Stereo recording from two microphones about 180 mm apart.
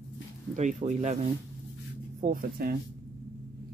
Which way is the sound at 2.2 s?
55° right (ahead or behind).